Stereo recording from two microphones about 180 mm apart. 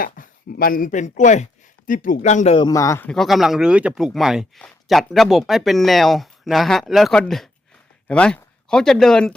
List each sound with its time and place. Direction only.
0.0 s speech: 55° left (ahead or behind)
2.6 s a man's voice: 20° left (ahead or behind)
3.1 s speech: centre (ahead or behind)